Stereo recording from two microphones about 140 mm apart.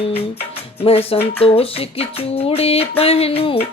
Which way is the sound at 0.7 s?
45° left (ahead or behind).